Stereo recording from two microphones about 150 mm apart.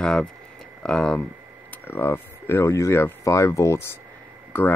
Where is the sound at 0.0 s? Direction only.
5° left (ahead or behind).